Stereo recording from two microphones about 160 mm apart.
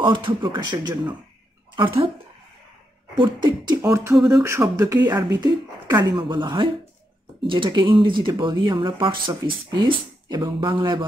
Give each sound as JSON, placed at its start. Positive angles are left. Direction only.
{"t": 0.0, "sound": "speech", "side_deg": -30}
{"t": 3.2, "sound": "speech", "side_deg": -30}
{"t": 3.9, "sound": "a sound", "side_deg": -20}
{"t": 4.3, "sound": "speech", "side_deg": -20}